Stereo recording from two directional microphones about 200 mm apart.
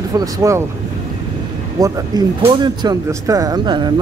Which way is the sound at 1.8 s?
20° right (ahead or behind).